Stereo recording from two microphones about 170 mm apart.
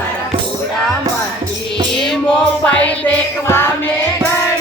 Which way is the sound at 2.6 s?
10° left (ahead or behind).